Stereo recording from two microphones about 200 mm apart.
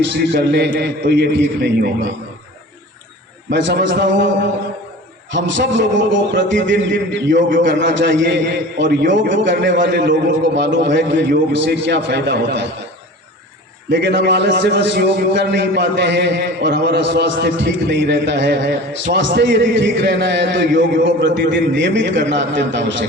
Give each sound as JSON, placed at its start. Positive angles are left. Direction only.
{"t": 0.0, "sound": "a man's voice", "side_deg": -60}
{"t": 3.5, "sound": "a man's voice", "side_deg": -60}
{"t": 5.3, "sound": "a man's voice", "side_deg": -65}
{"t": 14.0, "sound": "a man's voice", "side_deg": -60}